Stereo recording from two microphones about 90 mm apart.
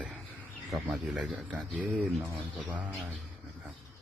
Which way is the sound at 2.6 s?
15° right (ahead or behind).